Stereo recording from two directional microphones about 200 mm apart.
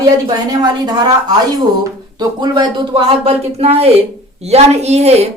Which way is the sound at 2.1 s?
20° right (ahead or behind).